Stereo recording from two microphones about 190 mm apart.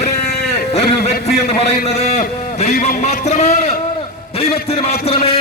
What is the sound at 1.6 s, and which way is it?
A man's voice, 35° left (ahead or behind).